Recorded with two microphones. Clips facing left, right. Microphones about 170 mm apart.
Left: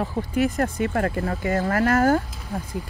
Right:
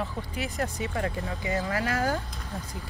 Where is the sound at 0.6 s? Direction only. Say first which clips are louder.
Left 7 dB; 55° left (ahead or behind).